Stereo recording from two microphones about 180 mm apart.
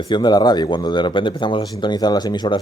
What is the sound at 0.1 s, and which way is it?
Speech, 25° left (ahead or behind).